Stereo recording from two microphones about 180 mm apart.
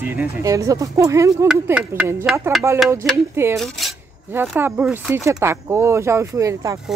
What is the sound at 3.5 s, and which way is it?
Cutlery, centre (ahead or behind).